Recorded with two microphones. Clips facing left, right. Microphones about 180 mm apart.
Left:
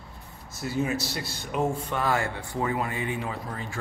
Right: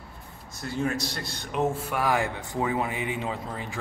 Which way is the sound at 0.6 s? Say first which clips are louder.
Left 1 dB; 5° left (ahead or behind).